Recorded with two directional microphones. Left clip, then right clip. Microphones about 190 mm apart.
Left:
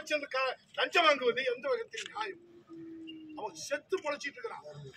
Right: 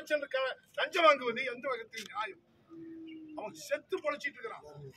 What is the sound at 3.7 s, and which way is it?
Speech, 10° left (ahead or behind).